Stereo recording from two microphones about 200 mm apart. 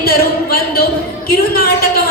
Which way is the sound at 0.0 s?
50° left (ahead or behind).